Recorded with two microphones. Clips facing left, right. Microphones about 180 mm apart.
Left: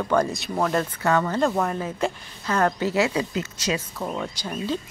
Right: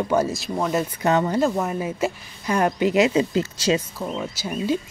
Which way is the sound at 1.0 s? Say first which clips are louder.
Right 4 dB; 20° right (ahead or behind).